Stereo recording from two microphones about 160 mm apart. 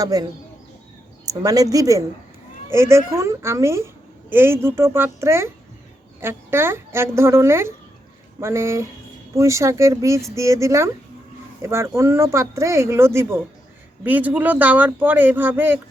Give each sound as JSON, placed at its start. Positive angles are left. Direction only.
{"t": 0.0, "sound": "speech", "side_deg": -25}